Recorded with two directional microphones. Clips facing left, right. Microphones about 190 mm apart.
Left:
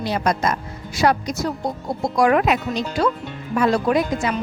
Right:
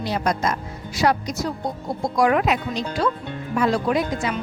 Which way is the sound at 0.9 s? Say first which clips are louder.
Left 2 dB; 50° left (ahead or behind).